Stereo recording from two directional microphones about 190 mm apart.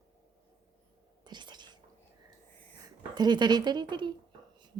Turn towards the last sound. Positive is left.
turn(degrees=-25)  # may be behind; listen again after turning